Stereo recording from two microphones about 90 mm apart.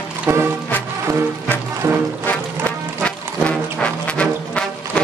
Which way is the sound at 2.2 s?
15° left (ahead or behind).